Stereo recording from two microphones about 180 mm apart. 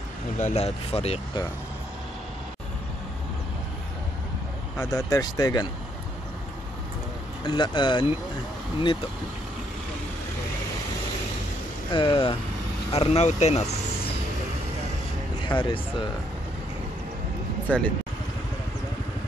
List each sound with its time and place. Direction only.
0.4 s speech: 35° left (ahead or behind)
4.7 s speech: 20° left (ahead or behind)
7.4 s speech: 25° left (ahead or behind)
11.9 s speech: 30° left (ahead or behind)
15.4 s speech: 25° left (ahead or behind)
17.6 s speech: 10° left (ahead or behind)